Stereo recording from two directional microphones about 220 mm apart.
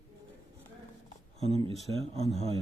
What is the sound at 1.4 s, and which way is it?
Speech, 25° right (ahead or behind).